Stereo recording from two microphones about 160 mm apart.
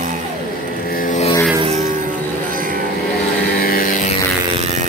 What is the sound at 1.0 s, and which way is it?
Vehicle, 55° left (ahead or behind).